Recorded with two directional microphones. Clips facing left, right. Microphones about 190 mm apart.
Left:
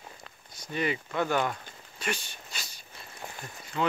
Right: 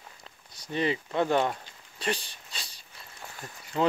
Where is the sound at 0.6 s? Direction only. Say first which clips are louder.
Right 2 dB; 30° right (ahead or behind).